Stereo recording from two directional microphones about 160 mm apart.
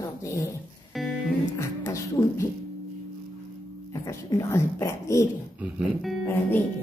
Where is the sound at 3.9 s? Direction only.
20° left (ahead or behind).